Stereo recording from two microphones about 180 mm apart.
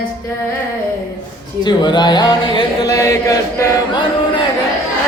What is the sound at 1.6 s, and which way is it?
Speech, 25° left (ahead or behind).